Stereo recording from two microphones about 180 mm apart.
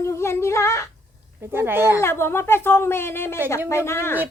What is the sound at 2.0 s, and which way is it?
Speech, 15° left (ahead or behind).